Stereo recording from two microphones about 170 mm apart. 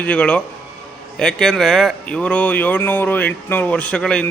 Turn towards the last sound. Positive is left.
turn(degrees=5)  # may be behind; listen again after turning